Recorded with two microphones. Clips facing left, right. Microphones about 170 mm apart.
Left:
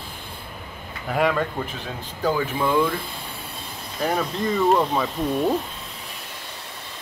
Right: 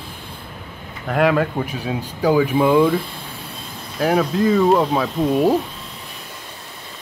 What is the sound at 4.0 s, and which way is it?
Speech, 5° right (ahead or behind).